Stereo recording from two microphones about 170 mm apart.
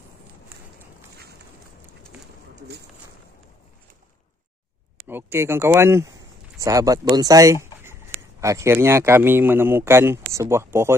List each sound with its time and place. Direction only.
5.0 s a man's voice: 10° right (ahead or behind)